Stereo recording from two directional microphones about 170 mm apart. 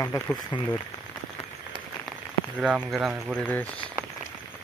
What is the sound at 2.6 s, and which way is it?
Speech, centre (ahead or behind).